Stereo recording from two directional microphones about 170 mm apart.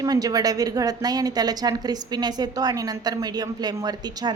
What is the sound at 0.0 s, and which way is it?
A woman's voice, 20° right (ahead or behind).